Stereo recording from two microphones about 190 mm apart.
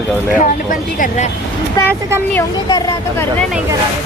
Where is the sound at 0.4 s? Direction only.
45° left (ahead or behind).